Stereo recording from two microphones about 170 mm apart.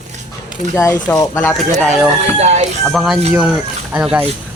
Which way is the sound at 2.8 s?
Centre (ahead or behind).